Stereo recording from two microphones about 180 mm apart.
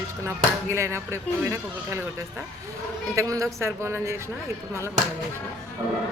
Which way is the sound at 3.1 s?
15° right (ahead or behind).